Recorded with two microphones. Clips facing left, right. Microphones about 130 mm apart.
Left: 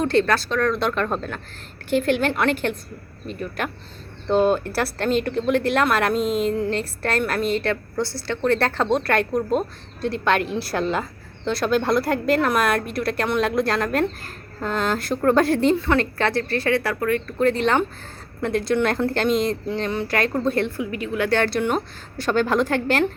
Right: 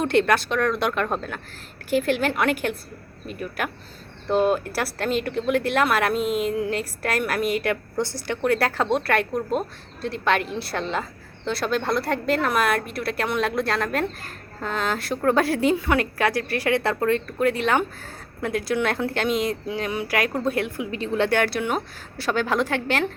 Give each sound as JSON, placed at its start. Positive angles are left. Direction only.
{"t": 0.0, "sound": "a woman's voice", "side_deg": -15}
{"t": 17.3, "sound": "speech", "side_deg": -10}
{"t": 21.2, "sound": "a woman's voice", "side_deg": -10}